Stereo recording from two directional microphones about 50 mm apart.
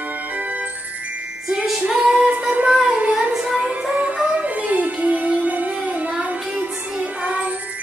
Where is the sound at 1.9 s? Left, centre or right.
Centre.